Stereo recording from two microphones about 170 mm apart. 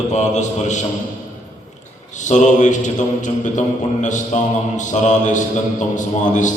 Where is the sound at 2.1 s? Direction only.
45° left (ahead or behind).